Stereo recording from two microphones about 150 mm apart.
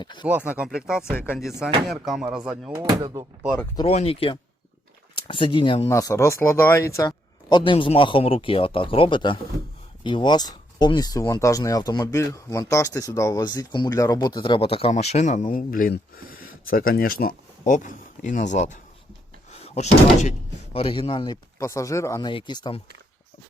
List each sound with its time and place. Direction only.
0.0 s speech: 30° left (ahead or behind)
0.3 s speech: 10° right (ahead or behind)
3.0 s speech: 30° right (ahead or behind)
3.9 s speech: 40° left (ahead or behind)
5.9 s speech: 20° left (ahead or behind)
7.5 s speech: 35° left (ahead or behind); by 17.3 s 75° left (ahead or behind)
17.7 s speech: 60° left (ahead or behind)
20.7 s speech: 40° left (ahead or behind)
21.6 s speech: 20° left (ahead or behind)
22.3 s speech: 30° left (ahead or behind)